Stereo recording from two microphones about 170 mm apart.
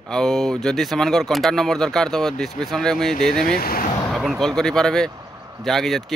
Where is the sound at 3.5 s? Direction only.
60° left (ahead or behind).